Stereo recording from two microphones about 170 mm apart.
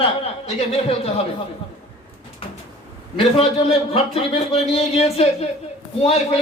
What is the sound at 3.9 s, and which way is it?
A man's voice, 35° left (ahead or behind).